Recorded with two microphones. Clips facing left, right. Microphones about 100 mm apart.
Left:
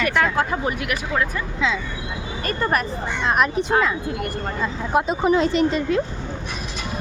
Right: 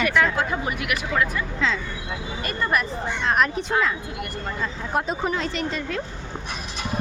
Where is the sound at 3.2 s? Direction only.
10° left (ahead or behind).